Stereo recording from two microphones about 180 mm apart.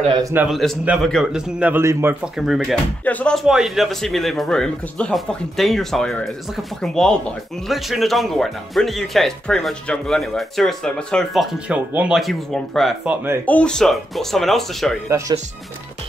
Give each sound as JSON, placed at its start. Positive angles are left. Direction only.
{"t": 0.2, "sound": "speech", "side_deg": -10}
{"t": 0.5, "sound": "speech", "side_deg": 0}
{"t": 2.3, "sound": "speech", "side_deg": 0}
{"t": 11.7, "sound": "speech", "side_deg": -5}
{"t": 13.5, "sound": "speech", "side_deg": 5}
{"t": 15.0, "sound": "speech", "side_deg": -15}